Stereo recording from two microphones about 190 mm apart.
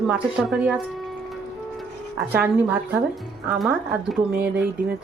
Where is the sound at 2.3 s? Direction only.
10° right (ahead or behind).